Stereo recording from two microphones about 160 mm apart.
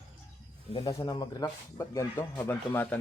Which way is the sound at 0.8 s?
20° left (ahead or behind).